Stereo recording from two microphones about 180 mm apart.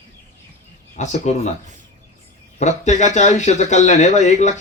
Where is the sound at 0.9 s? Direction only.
40° left (ahead or behind).